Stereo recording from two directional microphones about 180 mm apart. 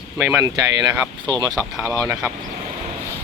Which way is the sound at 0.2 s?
10° right (ahead or behind).